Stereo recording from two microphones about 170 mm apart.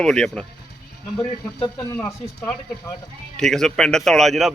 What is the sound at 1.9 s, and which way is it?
Speech, 15° left (ahead or behind).